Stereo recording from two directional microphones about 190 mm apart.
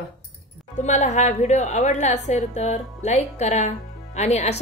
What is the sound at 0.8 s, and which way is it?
A woman's voice, 40° left (ahead or behind).